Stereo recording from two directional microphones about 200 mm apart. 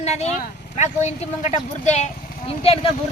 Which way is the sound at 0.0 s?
35° left (ahead or behind).